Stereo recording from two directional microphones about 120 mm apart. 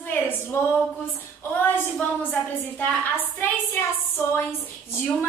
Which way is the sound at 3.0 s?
15° left (ahead or behind).